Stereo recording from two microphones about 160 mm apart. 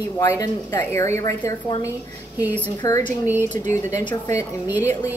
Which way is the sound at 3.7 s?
20° left (ahead or behind).